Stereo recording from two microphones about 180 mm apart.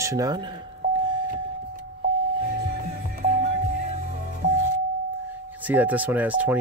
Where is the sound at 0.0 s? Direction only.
20° right (ahead or behind).